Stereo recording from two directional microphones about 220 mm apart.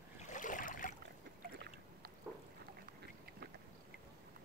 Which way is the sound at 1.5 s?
45° right (ahead or behind).